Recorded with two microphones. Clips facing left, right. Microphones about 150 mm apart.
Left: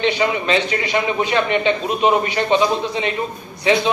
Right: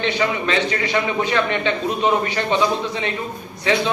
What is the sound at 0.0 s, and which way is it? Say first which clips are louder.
A man's voice: left 2 dB; 20° left (ahead or behind).